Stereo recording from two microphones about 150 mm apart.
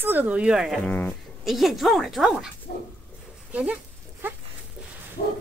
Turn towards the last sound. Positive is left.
turn(degrees=55)  # may be behind; listen again after turning